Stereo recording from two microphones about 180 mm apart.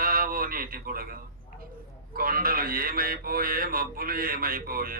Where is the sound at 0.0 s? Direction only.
55° right (ahead or behind).